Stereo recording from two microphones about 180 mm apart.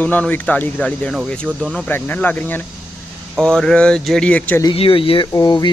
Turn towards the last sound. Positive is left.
turn(degrees=25)  # may be behind; listen again after turning